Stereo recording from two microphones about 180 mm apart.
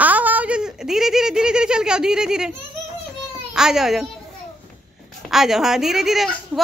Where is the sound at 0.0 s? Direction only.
10° right (ahead or behind).